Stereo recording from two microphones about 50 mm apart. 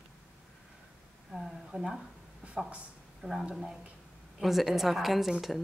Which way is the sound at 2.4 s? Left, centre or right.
Right.